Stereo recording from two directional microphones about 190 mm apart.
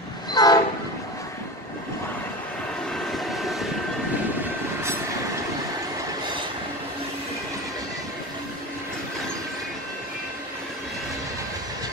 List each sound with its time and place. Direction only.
0.3 s train: 20° left (ahead or behind)
3.1 s vehicle: centre (ahead or behind)